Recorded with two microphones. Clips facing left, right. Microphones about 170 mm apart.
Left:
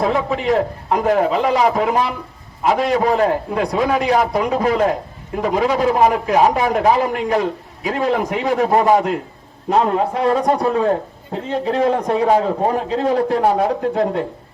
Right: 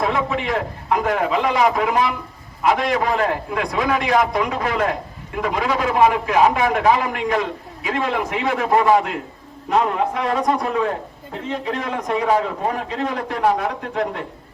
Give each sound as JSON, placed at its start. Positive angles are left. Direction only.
{"t": 0.1, "sound": "a man's voice", "side_deg": 35}